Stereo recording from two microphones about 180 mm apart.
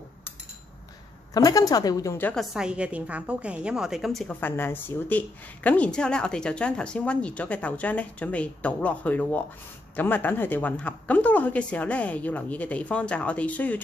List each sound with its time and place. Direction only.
1.3 s a woman's voice: 20° left (ahead or behind)
2.5 s a woman's voice: 5° right (ahead or behind)